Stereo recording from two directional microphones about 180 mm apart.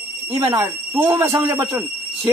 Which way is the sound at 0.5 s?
15° right (ahead or behind).